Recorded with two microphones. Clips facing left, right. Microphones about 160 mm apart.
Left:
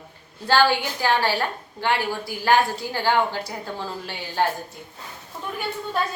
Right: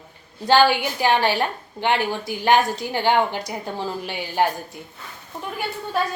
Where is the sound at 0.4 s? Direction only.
15° right (ahead or behind).